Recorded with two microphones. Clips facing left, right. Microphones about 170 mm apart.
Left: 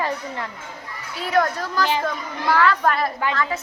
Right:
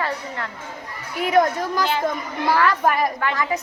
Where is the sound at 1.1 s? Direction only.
15° right (ahead or behind).